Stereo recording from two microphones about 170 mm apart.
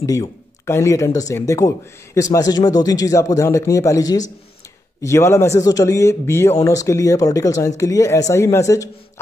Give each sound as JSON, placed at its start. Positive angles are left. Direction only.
{"t": 0.0, "sound": "speech", "side_deg": 20}